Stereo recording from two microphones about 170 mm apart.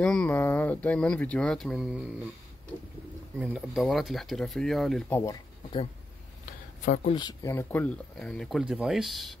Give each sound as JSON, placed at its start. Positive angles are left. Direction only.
{"t": 0.0, "sound": "speech", "side_deg": 5}
{"t": 3.3, "sound": "speech", "side_deg": -5}
{"t": 6.8, "sound": "speech", "side_deg": 45}
{"t": 7.1, "sound": "speech", "side_deg": 25}
{"t": 7.5, "sound": "speech", "side_deg": 10}